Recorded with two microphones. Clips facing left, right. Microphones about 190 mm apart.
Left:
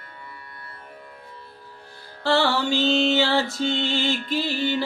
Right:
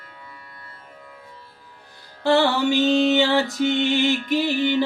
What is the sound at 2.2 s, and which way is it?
Music, 20° right (ahead or behind).